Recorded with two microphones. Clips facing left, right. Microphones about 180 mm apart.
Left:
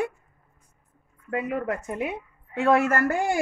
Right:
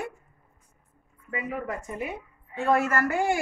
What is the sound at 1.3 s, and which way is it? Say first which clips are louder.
A woman's voice: left 5 dB; 65° left (ahead or behind).